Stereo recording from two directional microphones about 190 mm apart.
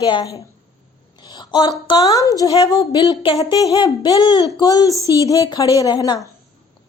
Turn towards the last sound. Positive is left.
turn(degrees=20)  # may be behind; listen again after turning